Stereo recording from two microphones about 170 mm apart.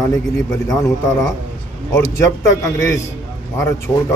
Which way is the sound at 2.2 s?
15° left (ahead or behind).